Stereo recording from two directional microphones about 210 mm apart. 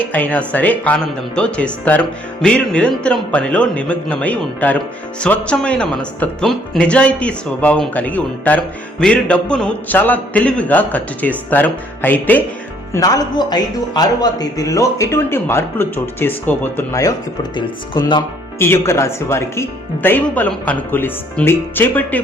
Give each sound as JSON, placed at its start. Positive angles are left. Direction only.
{"t": 0.0, "sound": "speech", "side_deg": 5}
{"t": 18.6, "sound": "speech", "side_deg": 10}